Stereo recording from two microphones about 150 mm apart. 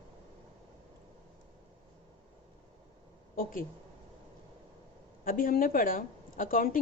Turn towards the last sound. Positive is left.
turn(degrees=70)  # may be behind; listen again after turning